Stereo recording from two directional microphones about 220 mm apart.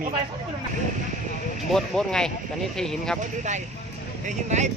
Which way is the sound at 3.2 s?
35° right (ahead or behind).